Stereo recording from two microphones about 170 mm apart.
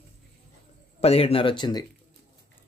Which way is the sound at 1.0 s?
35° left (ahead or behind).